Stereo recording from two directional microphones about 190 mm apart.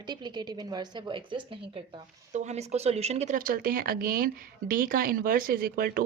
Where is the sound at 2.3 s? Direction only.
35° right (ahead or behind).